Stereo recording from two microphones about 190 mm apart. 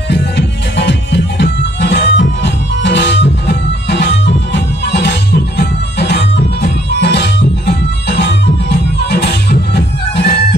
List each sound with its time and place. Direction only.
0.1 s music: 65° left (ahead or behind)